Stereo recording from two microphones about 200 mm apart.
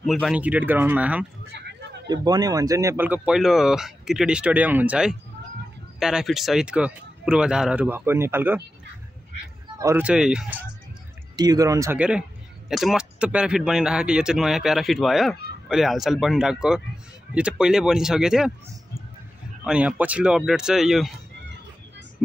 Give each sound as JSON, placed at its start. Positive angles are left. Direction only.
{"t": 0.0, "sound": "speech", "side_deg": 0}
{"t": 2.0, "sound": "speech", "side_deg": -20}
{"t": 9.8, "sound": "speech", "side_deg": -10}
{"t": 11.3, "sound": "speech", "side_deg": -20}
{"t": 19.6, "sound": "speech", "side_deg": -5}